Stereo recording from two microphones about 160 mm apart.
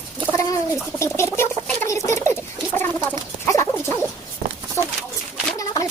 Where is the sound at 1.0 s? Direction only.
15° left (ahead or behind).